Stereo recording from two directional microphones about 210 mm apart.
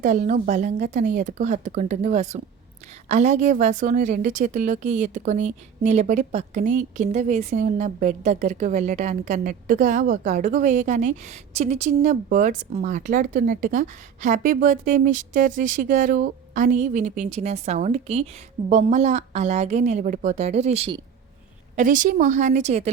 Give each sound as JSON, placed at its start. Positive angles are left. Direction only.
{"t": 0.0, "sound": "a woman's voice", "side_deg": -35}
{"t": 21.8, "sound": "a woman's voice", "side_deg": -40}